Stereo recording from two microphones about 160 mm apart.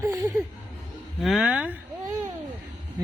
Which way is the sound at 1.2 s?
Centre (ahead or behind).